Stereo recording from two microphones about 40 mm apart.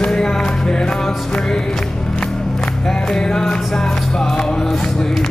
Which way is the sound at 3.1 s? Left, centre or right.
Centre.